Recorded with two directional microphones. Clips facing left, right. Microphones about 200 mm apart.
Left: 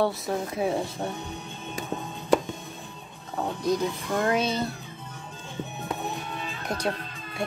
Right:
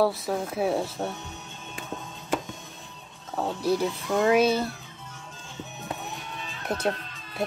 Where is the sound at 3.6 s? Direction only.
10° right (ahead or behind).